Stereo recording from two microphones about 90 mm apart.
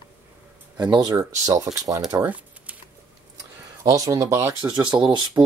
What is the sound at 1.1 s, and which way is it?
Speech, 40° right (ahead or behind).